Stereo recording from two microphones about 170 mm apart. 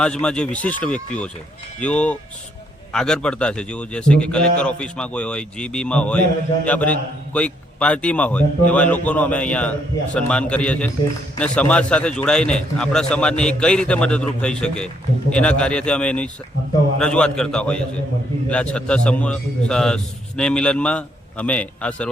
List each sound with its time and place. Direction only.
0.0 s a man's voice: 5° left (ahead or behind)